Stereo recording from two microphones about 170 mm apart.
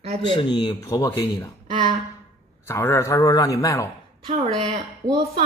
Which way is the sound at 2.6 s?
15° left (ahead or behind).